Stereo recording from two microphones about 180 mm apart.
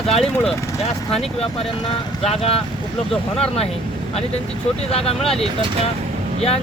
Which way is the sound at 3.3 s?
35° left (ahead or behind).